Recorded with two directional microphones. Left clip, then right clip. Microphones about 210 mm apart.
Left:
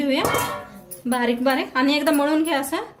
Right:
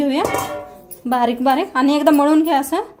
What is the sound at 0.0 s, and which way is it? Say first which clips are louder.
Music: right 3 dB; 35° right (ahead or behind).